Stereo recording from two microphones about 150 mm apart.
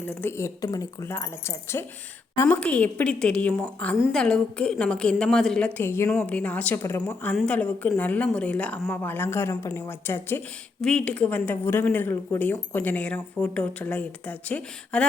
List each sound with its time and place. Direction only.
0.0 s a woman's voice: 15° left (ahead or behind)
2.6 s speech: 10° left (ahead or behind)
3.9 s a woman's voice: 5° right (ahead or behind)
4.2 s a woman's voice: 5° left (ahead or behind)